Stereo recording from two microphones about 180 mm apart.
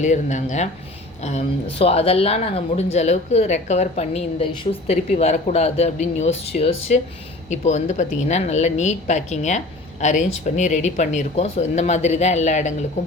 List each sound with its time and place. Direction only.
0.0 s speech: 40° left (ahead or behind)